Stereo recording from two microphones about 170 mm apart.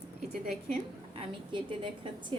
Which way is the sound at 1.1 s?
30° right (ahead or behind).